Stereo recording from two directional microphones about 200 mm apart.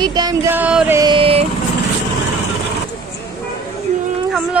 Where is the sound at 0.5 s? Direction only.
10° right (ahead or behind).